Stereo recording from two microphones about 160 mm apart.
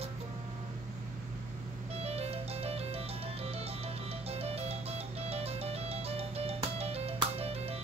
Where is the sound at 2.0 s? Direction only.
40° right (ahead or behind).